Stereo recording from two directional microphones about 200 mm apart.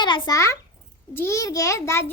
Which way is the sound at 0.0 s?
25° left (ahead or behind).